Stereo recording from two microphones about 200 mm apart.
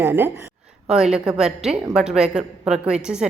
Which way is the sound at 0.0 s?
10° right (ahead or behind).